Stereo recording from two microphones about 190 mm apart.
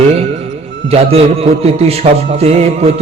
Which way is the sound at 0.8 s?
30° right (ahead or behind).